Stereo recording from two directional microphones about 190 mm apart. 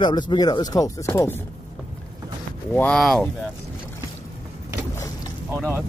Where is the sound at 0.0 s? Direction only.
25° left (ahead or behind).